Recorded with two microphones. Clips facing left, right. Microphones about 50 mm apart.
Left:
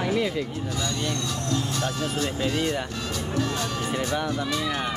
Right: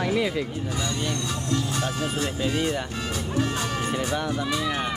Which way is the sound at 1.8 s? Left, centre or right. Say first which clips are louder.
Even; centre.